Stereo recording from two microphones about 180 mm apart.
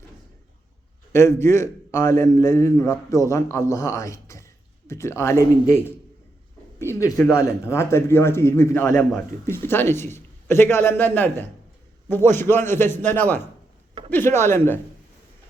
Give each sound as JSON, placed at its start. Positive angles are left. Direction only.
{"t": 1.1, "sound": "a man's voice", "side_deg": 15}